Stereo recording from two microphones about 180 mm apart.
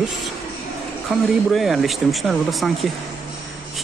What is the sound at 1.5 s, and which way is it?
Speech, centre (ahead or behind).